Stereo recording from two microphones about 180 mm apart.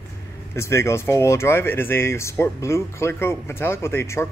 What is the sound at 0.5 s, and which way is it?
Speech, 15° left (ahead or behind).